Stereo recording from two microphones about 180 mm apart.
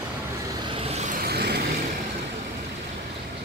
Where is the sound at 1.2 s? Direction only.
65° right (ahead or behind).